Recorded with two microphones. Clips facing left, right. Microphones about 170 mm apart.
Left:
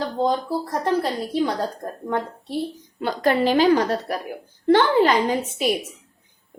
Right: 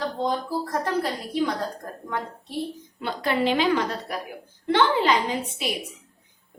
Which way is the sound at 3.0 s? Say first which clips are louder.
Left 5 dB; 45° left (ahead or behind).